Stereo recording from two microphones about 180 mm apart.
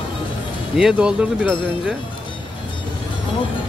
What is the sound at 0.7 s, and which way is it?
Speech, 5° right (ahead or behind).